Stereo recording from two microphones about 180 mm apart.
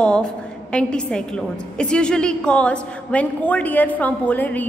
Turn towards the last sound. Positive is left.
turn(degrees=10)  # may be behind; listen again after turning